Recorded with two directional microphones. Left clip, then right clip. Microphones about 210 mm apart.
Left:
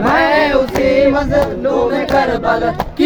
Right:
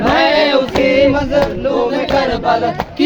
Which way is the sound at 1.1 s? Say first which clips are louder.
Even; 20° left (ahead or behind).